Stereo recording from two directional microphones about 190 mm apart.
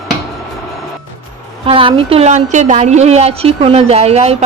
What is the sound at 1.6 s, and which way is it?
A woman's voice, 30° right (ahead or behind).